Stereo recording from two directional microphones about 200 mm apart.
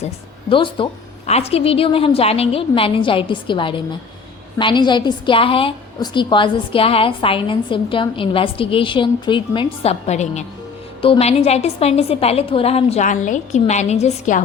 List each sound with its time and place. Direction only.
0.5 s a woman's voice: 25° left (ahead or behind)